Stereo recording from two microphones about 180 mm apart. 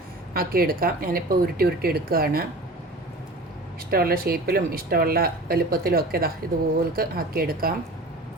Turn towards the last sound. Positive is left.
turn(degrees=-55)  # may be behind; listen again after turning